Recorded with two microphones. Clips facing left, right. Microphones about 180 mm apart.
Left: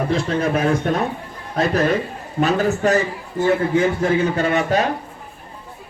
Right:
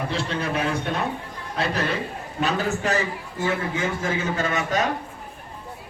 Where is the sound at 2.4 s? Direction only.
40° left (ahead or behind).